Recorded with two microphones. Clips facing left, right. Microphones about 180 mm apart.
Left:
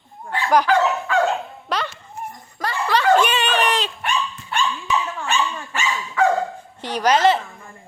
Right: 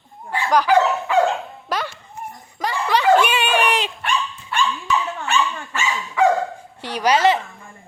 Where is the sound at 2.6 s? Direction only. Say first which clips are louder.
Right 1 dB; 15° right (ahead or behind).